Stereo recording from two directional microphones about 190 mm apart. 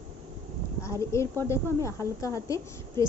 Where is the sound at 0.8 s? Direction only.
15° left (ahead or behind).